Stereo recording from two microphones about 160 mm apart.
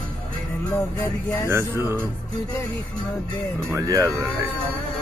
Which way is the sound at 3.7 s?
20° right (ahead or behind).